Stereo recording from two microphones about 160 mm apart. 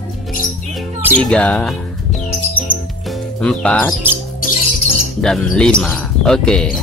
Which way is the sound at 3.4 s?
5° left (ahead or behind).